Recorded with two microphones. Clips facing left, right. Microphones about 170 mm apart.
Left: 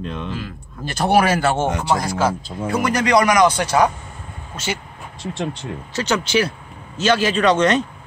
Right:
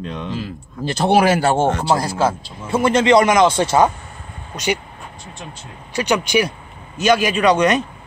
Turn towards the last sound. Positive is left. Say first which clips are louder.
# right 1 dB
turn(degrees=-10)  # may be behind; listen again after turning